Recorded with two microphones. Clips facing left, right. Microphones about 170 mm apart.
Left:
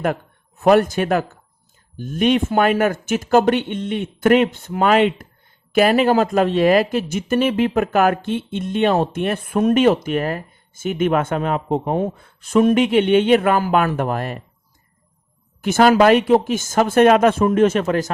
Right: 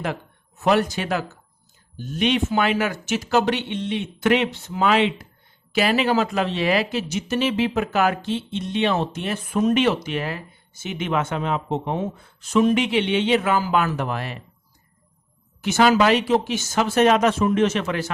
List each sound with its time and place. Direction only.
0.6 s speech: 50° left (ahead or behind)
15.6 s speech: 50° left (ahead or behind)